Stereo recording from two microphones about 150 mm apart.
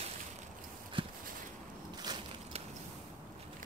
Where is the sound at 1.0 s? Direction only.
35° right (ahead or behind).